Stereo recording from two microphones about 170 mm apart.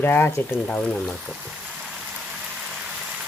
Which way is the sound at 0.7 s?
5° left (ahead or behind).